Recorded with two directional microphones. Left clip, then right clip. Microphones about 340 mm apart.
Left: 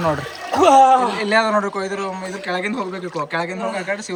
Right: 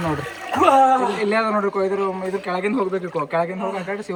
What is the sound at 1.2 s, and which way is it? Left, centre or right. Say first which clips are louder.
Speech: left 3 dB; centre.